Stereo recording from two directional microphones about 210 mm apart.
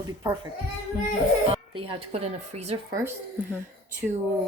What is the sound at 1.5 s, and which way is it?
Speech, 25° right (ahead or behind).